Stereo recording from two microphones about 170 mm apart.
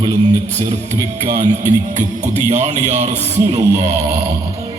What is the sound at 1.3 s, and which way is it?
A man's voice, 45° right (ahead or behind).